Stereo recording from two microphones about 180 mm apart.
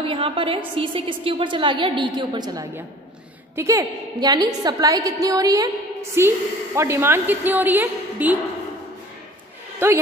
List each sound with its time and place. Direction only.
0.0 s a woman's voice: 30° right (ahead or behind); by 8.4 s 10° right (ahead or behind)